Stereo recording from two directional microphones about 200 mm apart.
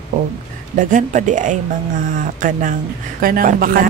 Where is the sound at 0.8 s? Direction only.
40° right (ahead or behind).